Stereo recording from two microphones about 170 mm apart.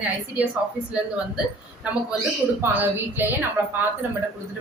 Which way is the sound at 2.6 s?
10° right (ahead or behind).